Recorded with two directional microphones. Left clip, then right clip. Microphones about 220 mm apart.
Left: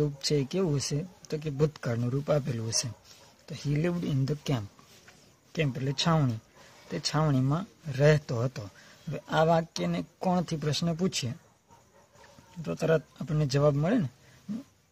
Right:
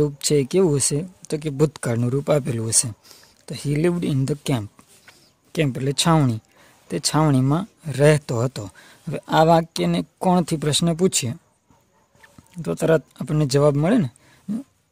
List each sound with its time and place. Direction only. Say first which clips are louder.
0.0 s speech: right 9 dB; 50° right (ahead or behind)
12.6 s speech: right 8 dB; 50° right (ahead or behind)